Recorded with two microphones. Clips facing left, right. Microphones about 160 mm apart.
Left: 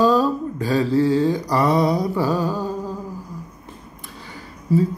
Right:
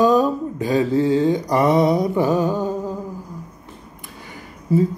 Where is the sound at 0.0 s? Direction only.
20° right (ahead or behind).